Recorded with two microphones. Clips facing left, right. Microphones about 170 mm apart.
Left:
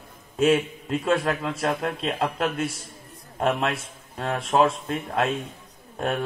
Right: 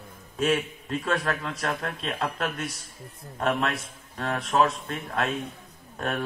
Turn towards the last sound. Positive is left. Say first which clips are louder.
# left 3 dB
turn(degrees=25)  # may be behind; listen again after turning